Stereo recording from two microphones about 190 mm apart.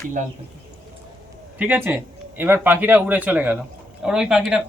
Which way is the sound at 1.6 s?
10° right (ahead or behind).